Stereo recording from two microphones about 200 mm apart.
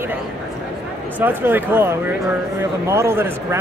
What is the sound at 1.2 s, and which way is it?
Speech, 10° right (ahead or behind).